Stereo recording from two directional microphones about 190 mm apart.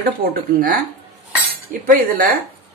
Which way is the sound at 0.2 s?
50° right (ahead or behind).